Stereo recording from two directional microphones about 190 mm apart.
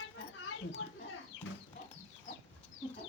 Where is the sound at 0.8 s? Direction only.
90° left.